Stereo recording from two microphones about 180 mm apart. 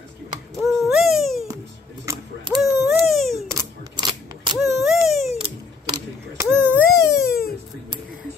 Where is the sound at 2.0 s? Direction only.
25° right (ahead or behind).